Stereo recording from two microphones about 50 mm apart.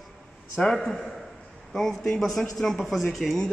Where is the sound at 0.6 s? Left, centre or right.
Centre.